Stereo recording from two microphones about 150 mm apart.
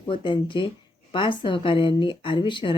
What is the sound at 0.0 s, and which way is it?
Speech, 35° left (ahead or behind).